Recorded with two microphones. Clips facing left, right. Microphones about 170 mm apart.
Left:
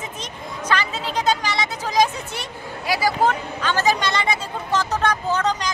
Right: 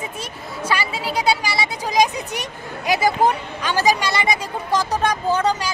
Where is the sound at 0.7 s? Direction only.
10° right (ahead or behind).